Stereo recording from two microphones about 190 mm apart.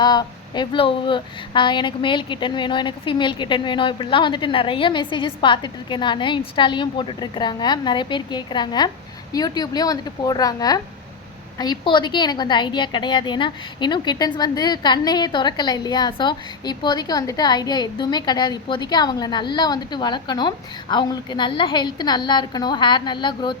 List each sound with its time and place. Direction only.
0.0 s a woman's voice: 20° left (ahead or behind)